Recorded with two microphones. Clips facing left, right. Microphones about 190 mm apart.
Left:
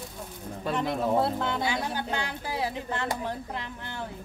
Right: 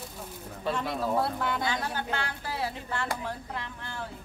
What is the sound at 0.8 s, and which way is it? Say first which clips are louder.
Speech: left 4 dB; 20° left (ahead or behind).